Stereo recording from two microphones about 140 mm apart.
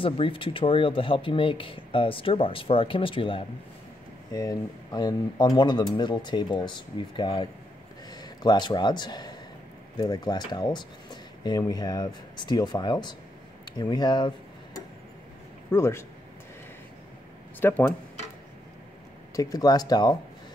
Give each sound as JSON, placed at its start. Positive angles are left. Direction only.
{"t": 0.0, "sound": "speech", "side_deg": 40}
{"t": 4.3, "sound": "a man's voice", "side_deg": 25}
{"t": 13.7, "sound": "tick-tock", "side_deg": 30}
{"t": 15.7, "sound": "speech", "side_deg": 20}
{"t": 17.6, "sound": "speech", "side_deg": 15}
{"t": 19.3, "sound": "speech", "side_deg": 25}